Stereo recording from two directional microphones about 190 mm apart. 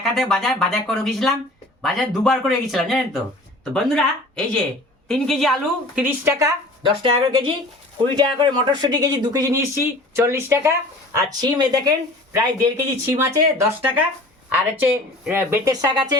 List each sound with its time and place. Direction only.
0.0 s speech: centre (ahead or behind); by 16.1 s 20° right (ahead or behind)